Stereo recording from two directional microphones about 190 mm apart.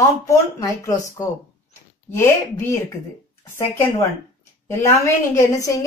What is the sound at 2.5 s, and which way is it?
A woman's voice, 15° left (ahead or behind).